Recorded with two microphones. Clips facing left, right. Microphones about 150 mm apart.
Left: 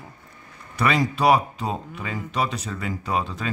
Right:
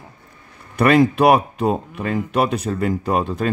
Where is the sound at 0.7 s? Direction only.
55° right (ahead or behind).